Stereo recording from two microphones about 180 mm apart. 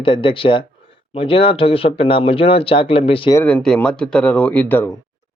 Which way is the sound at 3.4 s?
10° left (ahead or behind).